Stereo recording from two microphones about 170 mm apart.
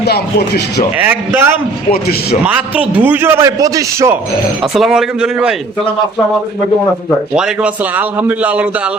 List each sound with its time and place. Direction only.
0.0 s speech: 70° left (ahead or behind)
1.0 s a man's voice: 10° right (ahead or behind)
4.6 s speech: centre (ahead or behind)
7.3 s a man's voice: 5° right (ahead or behind)